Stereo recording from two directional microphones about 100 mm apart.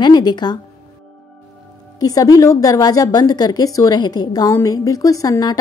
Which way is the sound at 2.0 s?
35° left (ahead or behind).